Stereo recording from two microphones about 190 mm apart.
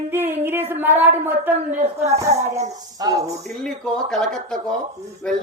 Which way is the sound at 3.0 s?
20° right (ahead or behind).